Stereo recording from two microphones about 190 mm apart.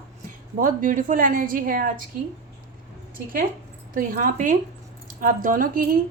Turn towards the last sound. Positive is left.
turn(degrees=-50)  # may be behind; listen again after turning